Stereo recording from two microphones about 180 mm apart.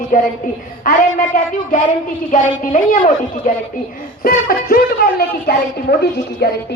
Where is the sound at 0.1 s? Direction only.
50° left (ahead or behind).